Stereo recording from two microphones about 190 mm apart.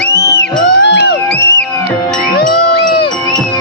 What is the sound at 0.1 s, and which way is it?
Music, 20° left (ahead or behind).